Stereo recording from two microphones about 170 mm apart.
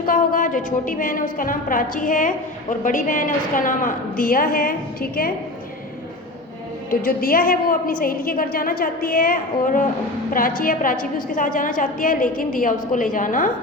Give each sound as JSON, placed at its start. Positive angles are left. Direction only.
{"t": 0.0, "sound": "a woman's voice", "side_deg": 55}
{"t": 7.0, "sound": "a woman's voice", "side_deg": 55}